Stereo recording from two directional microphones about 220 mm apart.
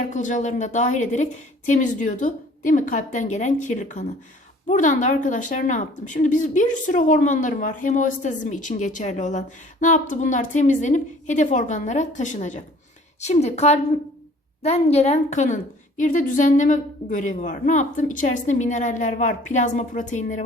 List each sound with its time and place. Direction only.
0.1 s a woman's voice: 35° left (ahead or behind)